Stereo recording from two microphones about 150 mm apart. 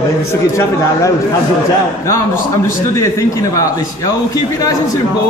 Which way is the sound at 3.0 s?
20° left (ahead or behind).